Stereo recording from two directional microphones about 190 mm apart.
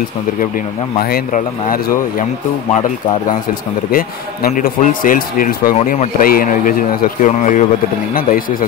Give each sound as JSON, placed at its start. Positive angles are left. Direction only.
{"t": 1.1, "sound": "a man's voice", "side_deg": 45}
{"t": 3.9, "sound": "a man's voice", "side_deg": 45}